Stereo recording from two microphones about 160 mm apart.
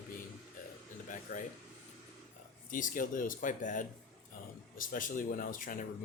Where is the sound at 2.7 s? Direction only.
55° left (ahead or behind).